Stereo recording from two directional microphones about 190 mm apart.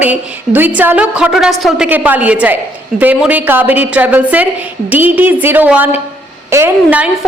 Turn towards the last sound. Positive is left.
turn(degrees=-10)  # may be behind; listen again after turning